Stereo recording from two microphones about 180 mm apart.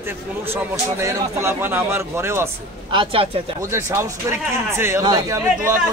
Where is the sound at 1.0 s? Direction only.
15° right (ahead or behind).